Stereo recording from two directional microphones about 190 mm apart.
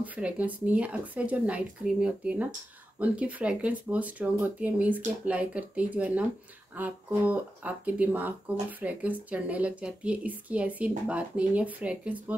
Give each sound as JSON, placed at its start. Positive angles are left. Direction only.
{"t": 0.0, "sound": "speech", "side_deg": -10}